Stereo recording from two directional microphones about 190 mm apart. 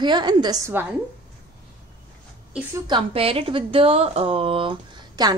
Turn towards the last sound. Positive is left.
turn(degrees=-25)  # may be behind; listen again after turning